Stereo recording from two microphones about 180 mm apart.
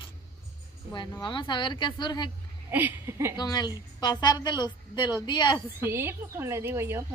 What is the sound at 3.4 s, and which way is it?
A woman's voice, 25° left (ahead or behind).